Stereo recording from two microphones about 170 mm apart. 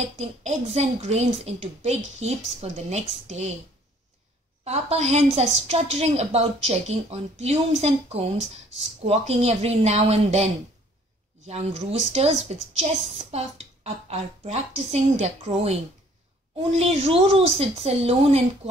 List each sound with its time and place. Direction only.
0.4 s a woman's voice: 40° right (ahead or behind)
4.6 s a woman's voice: 40° right (ahead or behind)
11.4 s a woman's voice: 40° right (ahead or behind)